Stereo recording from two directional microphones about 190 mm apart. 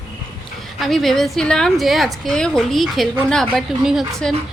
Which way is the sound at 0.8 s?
Centre (ahead or behind).